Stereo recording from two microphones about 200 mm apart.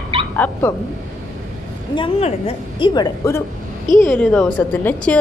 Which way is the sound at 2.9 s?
15° left (ahead or behind).